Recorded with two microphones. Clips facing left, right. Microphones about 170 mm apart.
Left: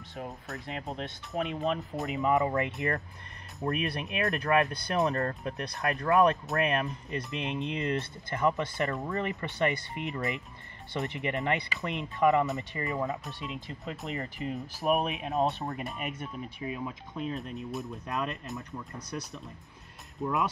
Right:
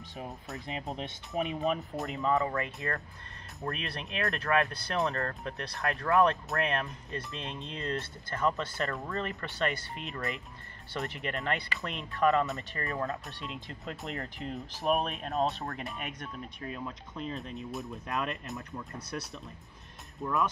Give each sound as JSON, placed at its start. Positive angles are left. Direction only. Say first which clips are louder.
{"t": 0.5, "sound": "speech", "louder": "right 2 dB", "side_deg": 0}
{"t": 1.3, "sound": "speech", "louder": "even", "side_deg": -15}
{"t": 1.6, "sound": "speech", "louder": "even", "side_deg": 0}
{"t": 2.1, "sound": "speech", "louder": "left 3 dB", "side_deg": 15}
{"t": 13.2, "sound": "speech", "louder": "left 3 dB", "side_deg": 0}
{"t": 15.7, "sound": "speech", "louder": "left 3 dB", "side_deg": 0}
{"t": 20.2, "sound": "speech", "louder": "left 1 dB", "side_deg": 15}